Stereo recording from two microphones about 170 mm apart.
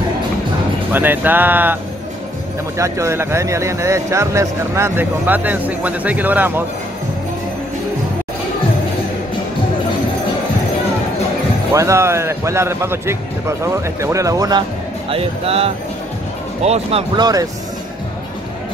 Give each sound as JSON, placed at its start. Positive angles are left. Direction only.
{"t": 0.9, "sound": "speech", "side_deg": -10}
{"t": 2.8, "sound": "speech", "side_deg": -15}
{"t": 11.7, "sound": "speech", "side_deg": -15}
{"t": 15.0, "sound": "speech", "side_deg": -35}
{"t": 17.2, "sound": "speech", "side_deg": -20}